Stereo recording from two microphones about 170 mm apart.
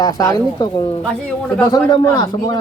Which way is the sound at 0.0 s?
20° left (ahead or behind).